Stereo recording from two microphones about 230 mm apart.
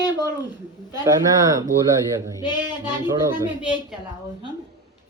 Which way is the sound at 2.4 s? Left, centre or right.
Centre.